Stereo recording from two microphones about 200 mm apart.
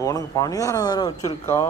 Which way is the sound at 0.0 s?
15° left (ahead or behind).